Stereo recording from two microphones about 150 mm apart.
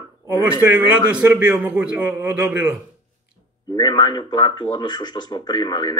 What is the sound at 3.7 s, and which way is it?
Speech, 25° left (ahead or behind).